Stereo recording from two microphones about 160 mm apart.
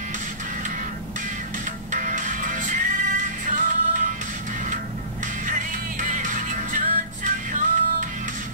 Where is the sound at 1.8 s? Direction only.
55° right (ahead or behind).